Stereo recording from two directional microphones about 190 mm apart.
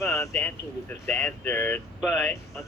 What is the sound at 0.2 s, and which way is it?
Speech, 10° left (ahead or behind).